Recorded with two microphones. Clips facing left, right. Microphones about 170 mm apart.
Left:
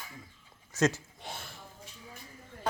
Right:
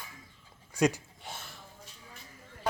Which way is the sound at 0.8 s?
10° right (ahead or behind).